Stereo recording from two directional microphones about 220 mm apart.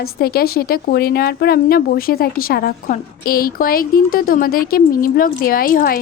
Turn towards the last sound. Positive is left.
turn(degrees=40)  # may be behind; listen again after turning